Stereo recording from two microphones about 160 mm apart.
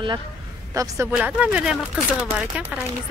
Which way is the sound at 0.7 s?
20° right (ahead or behind).